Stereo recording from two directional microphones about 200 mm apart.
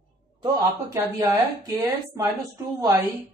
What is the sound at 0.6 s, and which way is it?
Speech, 15° right (ahead or behind).